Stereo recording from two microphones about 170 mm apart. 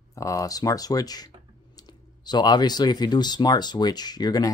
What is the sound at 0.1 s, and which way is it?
Speech, 20° left (ahead or behind).